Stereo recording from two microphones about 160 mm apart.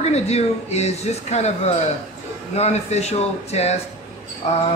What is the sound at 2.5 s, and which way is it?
A man's voice, 40° left (ahead or behind).